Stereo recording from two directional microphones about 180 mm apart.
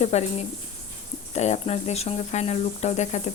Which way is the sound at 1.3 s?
40° left (ahead or behind).